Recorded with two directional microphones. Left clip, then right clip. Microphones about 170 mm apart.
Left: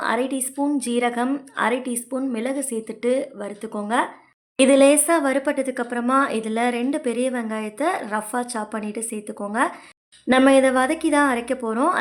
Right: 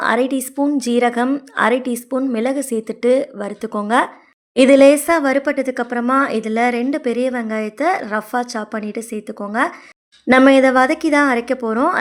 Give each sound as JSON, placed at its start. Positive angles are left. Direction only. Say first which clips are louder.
{"t": 0.0, "sound": "a woman's voice", "louder": "right 6 dB", "side_deg": -35}